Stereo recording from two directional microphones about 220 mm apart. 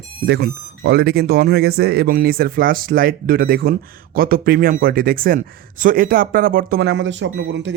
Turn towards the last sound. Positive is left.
turn(degrees=-55)  # may be behind; listen again after turning